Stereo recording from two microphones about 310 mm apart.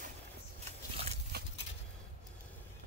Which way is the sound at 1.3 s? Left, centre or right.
Right.